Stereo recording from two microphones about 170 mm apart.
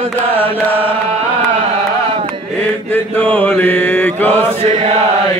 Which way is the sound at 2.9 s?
5° left (ahead or behind).